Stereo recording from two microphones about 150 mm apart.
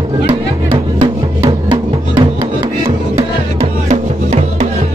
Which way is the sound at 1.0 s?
35° right (ahead or behind).